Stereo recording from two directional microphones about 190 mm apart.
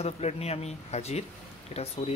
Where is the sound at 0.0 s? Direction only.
35° left (ahead or behind).